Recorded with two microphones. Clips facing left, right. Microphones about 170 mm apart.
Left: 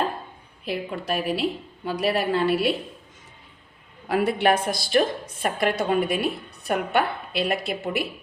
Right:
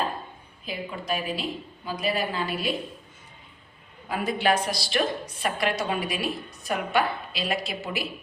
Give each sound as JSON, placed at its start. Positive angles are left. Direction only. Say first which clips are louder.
{"t": 0.6, "sound": "a woman's voice", "louder": "left 5 dB", "side_deg": 70}
{"t": 4.1, "sound": "a woman's voice", "louder": "left 4 dB", "side_deg": 70}